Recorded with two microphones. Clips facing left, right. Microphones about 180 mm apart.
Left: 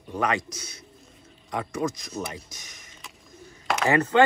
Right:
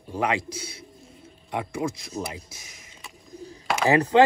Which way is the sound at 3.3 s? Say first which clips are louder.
Right 10 dB; 35° right (ahead or behind).